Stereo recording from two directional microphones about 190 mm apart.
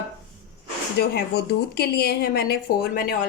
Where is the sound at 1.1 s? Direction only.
60° left (ahead or behind).